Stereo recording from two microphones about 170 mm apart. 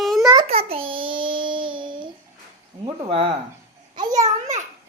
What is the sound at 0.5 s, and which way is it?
Child singing, 35° right (ahead or behind).